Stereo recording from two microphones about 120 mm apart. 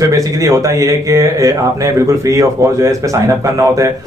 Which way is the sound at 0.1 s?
30° right (ahead or behind).